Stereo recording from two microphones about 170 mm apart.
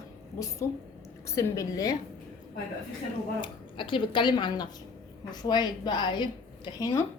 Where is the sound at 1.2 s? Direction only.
20° left (ahead or behind).